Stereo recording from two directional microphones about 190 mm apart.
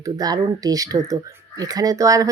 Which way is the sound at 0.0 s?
20° right (ahead or behind).